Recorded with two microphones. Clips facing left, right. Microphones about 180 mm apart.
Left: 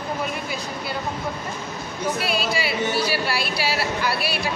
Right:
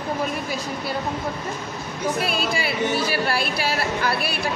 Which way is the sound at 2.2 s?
50° right (ahead or behind).